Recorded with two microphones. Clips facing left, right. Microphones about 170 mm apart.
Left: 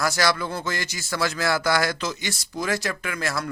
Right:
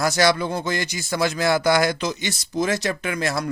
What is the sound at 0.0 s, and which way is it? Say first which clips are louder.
A man's voice: right 4 dB; 20° right (ahead or behind).